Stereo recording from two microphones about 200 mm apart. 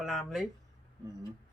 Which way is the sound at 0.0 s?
Centre (ahead or behind).